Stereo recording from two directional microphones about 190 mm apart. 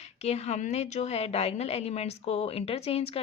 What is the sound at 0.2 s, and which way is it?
A woman's voice, 35° left (ahead or behind).